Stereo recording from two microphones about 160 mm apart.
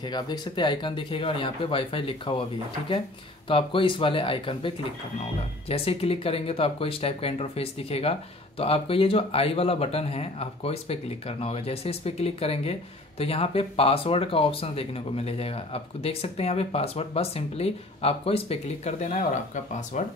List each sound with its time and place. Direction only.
0.0 s speech: 25° left (ahead or behind)
3.4 s speech: 35° left (ahead or behind); by 20.0 s 50° left (ahead or behind)